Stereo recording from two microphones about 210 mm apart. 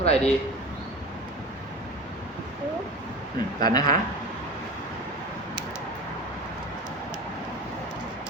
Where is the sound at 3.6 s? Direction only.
20° left (ahead or behind).